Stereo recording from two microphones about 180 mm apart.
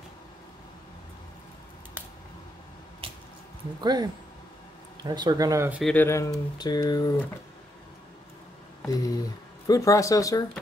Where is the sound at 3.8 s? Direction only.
25° right (ahead or behind).